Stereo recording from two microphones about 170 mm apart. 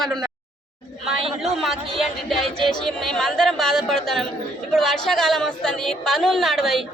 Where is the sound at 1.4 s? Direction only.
Centre (ahead or behind).